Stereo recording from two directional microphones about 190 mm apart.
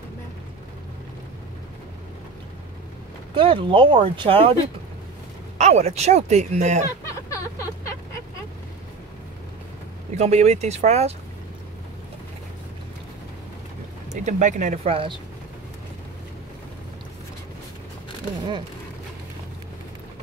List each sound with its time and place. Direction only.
3.3 s speech: 25° right (ahead or behind)
5.6 s speech: 35° right (ahead or behind)
7.1 s vehicle: 15° left (ahead or behind)
10.1 s speech: 35° right (ahead or behind)
14.2 s speech: 40° right (ahead or behind)